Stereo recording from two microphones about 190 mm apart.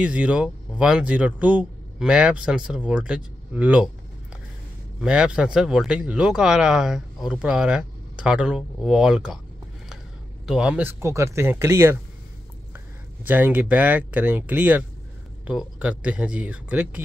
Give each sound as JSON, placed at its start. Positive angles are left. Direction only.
{"t": 0.0, "sound": "speech", "side_deg": -5}
{"t": 5.0, "sound": "speech", "side_deg": -5}
{"t": 10.4, "sound": "speech", "side_deg": -5}